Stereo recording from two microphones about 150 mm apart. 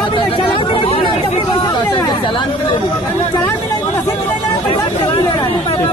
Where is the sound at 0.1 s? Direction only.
35° left (ahead or behind).